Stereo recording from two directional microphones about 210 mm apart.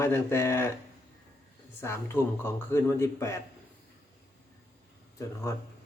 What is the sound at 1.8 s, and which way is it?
A man's voice, 10° left (ahead or behind).